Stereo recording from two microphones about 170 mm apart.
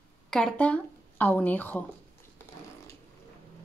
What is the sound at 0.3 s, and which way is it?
Speech, 5° left (ahead or behind).